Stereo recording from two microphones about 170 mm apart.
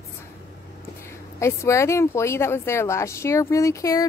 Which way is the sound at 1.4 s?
15° left (ahead or behind).